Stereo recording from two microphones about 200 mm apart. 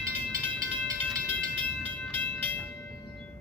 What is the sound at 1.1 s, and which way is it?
Train, 5° left (ahead or behind).